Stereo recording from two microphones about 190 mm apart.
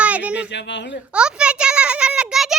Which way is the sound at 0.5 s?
70° left (ahead or behind).